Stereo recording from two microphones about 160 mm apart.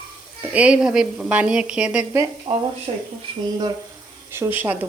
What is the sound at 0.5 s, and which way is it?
A woman's voice, 5° right (ahead or behind).